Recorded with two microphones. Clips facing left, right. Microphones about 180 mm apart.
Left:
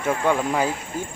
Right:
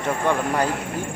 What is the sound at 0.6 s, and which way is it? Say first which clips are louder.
Speech: right 2 dB; 60° right (ahead or behind).